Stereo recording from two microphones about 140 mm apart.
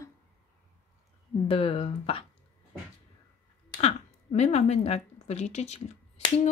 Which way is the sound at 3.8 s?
50° left (ahead or behind).